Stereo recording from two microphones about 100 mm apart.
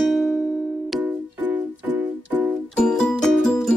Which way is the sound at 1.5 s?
15° right (ahead or behind).